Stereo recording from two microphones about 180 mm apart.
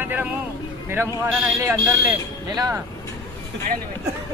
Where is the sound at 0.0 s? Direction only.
10° right (ahead or behind).